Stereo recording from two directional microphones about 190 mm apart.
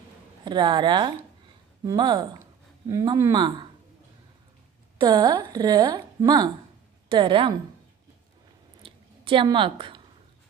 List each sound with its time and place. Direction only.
0.5 s a woman's voice: 25° right (ahead or behind)
4.9 s a woman's voice: 20° right (ahead or behind)
8.8 s chewing: 25° right (ahead or behind)